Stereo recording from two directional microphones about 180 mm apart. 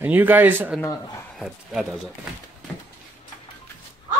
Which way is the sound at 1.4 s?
Centre (ahead or behind).